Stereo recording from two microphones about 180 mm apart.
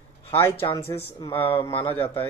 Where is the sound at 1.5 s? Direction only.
15° left (ahead or behind).